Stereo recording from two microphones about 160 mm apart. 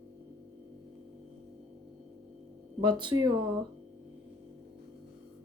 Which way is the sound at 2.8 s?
30° right (ahead or behind).